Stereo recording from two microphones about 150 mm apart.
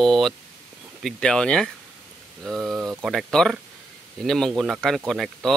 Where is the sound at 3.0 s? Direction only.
Centre (ahead or behind).